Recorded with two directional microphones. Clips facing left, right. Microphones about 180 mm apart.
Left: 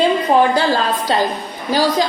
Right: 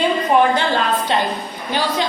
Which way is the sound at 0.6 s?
35° left (ahead or behind).